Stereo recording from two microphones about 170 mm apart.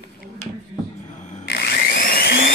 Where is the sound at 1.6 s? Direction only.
60° left (ahead or behind).